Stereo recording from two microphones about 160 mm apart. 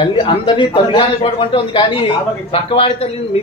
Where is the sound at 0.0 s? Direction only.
30° left (ahead or behind).